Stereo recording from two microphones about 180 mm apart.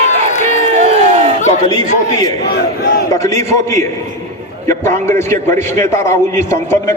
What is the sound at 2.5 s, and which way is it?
Battle cry, 65° left (ahead or behind).